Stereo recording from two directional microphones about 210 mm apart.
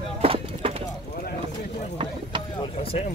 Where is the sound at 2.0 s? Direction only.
20° right (ahead or behind).